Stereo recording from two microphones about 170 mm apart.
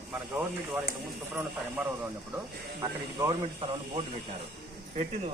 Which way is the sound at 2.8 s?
25° right (ahead or behind).